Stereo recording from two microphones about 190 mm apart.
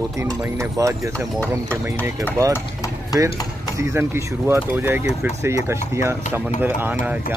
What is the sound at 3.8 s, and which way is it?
Speech, 15° right (ahead or behind).